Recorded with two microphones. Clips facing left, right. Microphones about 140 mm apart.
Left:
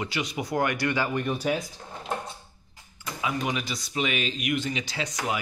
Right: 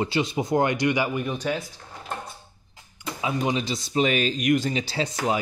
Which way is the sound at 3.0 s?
25° right (ahead or behind).